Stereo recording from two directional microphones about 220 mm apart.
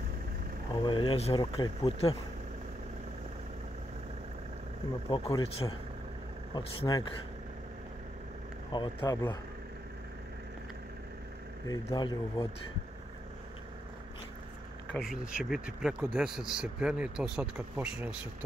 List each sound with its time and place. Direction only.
0.7 s speech: 20° left (ahead or behind)
5.1 s speech: 25° left (ahead or behind)
8.7 s speech: 20° left (ahead or behind)
11.6 s speech: 15° left (ahead or behind)
14.9 s speech: centre (ahead or behind)